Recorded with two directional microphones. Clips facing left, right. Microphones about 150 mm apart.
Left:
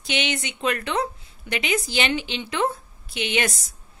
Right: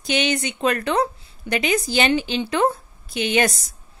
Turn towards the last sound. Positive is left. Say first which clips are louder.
# right 5 dB
turn(degrees=-40)  # may be behind; listen again after turning